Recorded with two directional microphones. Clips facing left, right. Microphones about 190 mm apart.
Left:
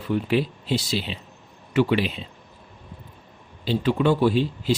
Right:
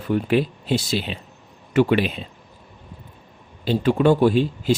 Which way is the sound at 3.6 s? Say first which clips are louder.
Right 4 dB; 45° right (ahead or behind).